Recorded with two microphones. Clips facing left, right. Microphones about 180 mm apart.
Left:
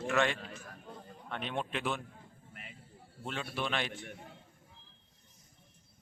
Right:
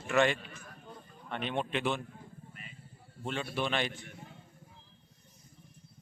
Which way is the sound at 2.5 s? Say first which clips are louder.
Even; 65° left (ahead or behind).